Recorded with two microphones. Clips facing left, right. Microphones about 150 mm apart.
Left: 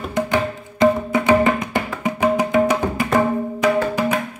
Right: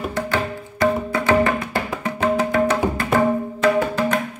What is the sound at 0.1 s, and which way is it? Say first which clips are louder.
Music: left 3 dB; 20° left (ahead or behind).